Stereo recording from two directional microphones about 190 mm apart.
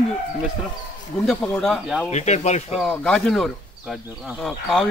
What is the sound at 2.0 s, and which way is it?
Speech, 35° left (ahead or behind).